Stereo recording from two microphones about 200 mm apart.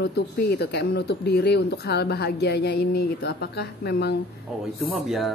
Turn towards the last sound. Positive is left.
turn(degrees=0)  # may be behind; listen again after turning